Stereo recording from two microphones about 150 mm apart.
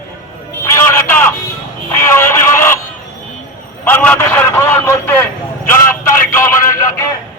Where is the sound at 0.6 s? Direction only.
15° left (ahead or behind).